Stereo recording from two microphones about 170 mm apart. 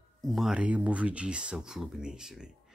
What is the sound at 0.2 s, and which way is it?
Speech, centre (ahead or behind).